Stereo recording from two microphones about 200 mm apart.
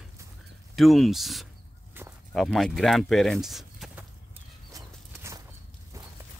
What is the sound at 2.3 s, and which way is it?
Speech, centre (ahead or behind).